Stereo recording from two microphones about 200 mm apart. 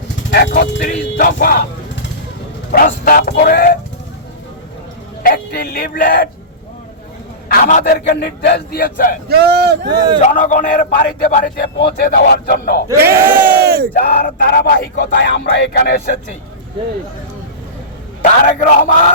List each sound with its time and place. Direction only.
0.3 s a man's voice: 45° left (ahead or behind)
5.2 s speech: 50° left (ahead or behind)
7.4 s a man's voice: 45° left (ahead or behind)
9.3 s speech: 55° right (ahead or behind)
10.2 s a man's voice: 35° left (ahead or behind)
12.9 s a sound: 15° right (ahead or behind)
13.7 s a sound: 50° right (ahead or behind)
13.9 s a man's voice: 45° left (ahead or behind)
15.1 s speech: 65° left (ahead or behind)
18.2 s a man's voice: 40° left (ahead or behind)